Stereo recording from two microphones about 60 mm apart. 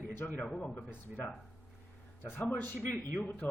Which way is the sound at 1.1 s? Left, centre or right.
Right.